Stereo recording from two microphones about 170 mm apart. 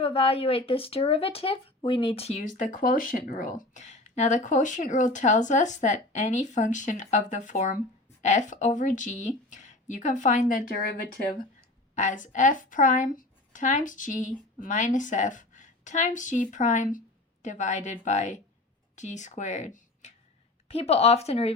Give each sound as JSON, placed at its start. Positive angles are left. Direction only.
{"t": 0.0, "sound": "speech", "side_deg": 35}
{"t": 11.9, "sound": "a woman's voice", "side_deg": 50}